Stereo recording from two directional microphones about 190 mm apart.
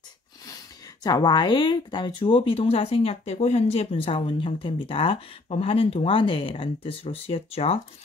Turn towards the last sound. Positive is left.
turn(degrees=30)  # may be behind; listen again after turning